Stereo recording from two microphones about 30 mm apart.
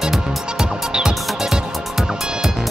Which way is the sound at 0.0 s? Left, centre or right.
Centre.